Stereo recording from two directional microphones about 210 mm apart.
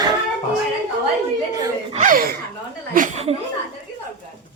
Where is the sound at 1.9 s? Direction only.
35° right (ahead or behind).